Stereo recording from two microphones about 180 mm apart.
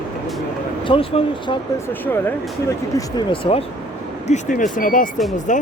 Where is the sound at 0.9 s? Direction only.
30° left (ahead or behind).